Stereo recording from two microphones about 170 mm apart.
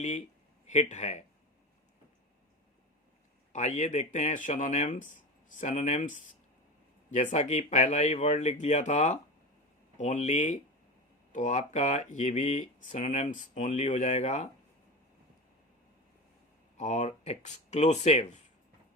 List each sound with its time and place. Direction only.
0.7 s speech: 45° left (ahead or behind)
3.5 s speech: 45° left (ahead or behind)
16.7 s speech: 45° left (ahead or behind)